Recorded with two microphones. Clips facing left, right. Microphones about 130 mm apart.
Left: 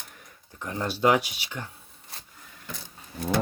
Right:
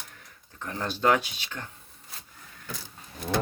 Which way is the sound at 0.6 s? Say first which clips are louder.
Left 3 dB; 15° left (ahead or behind).